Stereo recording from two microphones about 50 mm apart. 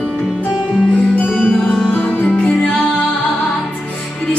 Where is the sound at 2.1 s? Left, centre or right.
Left.